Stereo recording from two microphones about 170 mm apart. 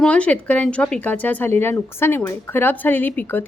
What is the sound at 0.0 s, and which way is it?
A woman's voice, 5° left (ahead or behind).